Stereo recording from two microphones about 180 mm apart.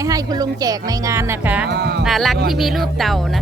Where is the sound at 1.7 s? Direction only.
65° right (ahead or behind).